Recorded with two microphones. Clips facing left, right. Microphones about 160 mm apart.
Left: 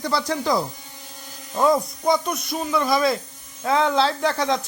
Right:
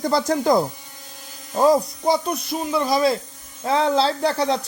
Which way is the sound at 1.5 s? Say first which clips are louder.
Right 3 dB; 30° right (ahead or behind).